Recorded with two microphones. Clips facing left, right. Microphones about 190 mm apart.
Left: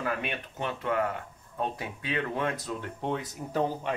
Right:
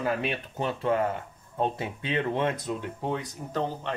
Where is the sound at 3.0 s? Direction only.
Centre (ahead or behind).